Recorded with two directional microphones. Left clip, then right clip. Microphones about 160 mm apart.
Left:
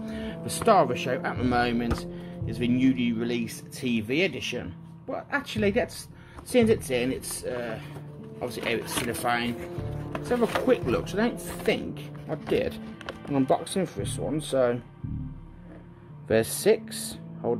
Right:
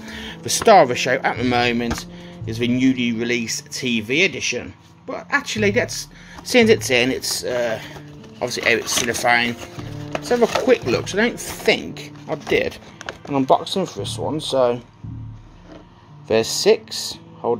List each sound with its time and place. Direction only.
0.0 s speech: 20° right (ahead or behind)
6.5 s speech: 25° right (ahead or behind); by 13.5 s 10° right (ahead or behind)
13.8 s speech: 35° left (ahead or behind)
14.1 s speech: centre (ahead or behind)
16.3 s speech: centre (ahead or behind)